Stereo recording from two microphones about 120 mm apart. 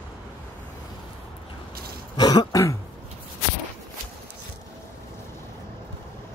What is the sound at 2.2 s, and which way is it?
Throat clearing, 35° left (ahead or behind).